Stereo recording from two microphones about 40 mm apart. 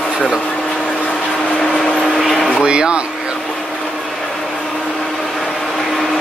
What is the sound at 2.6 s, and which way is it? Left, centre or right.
Speech, right.